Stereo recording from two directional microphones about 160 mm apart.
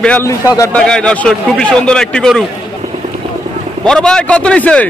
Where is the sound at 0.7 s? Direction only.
5° left (ahead or behind).